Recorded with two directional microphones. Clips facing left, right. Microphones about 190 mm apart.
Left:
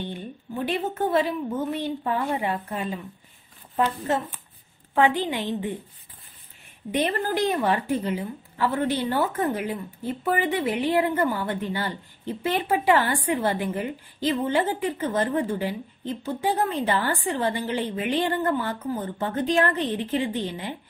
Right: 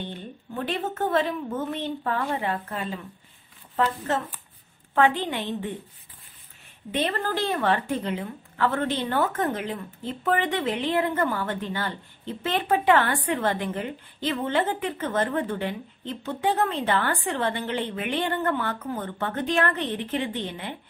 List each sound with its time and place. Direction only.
0.1 s a woman's voice: 10° left (ahead or behind)
6.9 s a woman's voice: 15° left (ahead or behind)